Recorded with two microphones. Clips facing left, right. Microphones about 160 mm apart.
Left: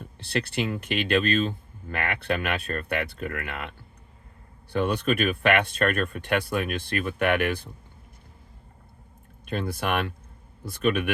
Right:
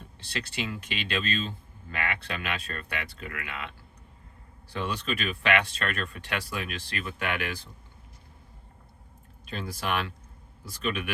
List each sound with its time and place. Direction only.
0.2 s speech: 55° left (ahead or behind)
9.5 s speech: 55° left (ahead or behind)